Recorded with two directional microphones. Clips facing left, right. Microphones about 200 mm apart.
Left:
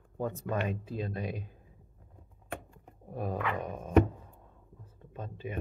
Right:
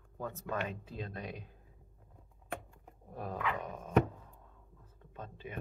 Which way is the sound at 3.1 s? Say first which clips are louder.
Left 6 dB; 15° left (ahead or behind).